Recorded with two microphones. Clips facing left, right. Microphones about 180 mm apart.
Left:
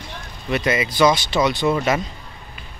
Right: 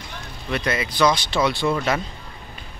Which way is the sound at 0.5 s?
Centre (ahead or behind).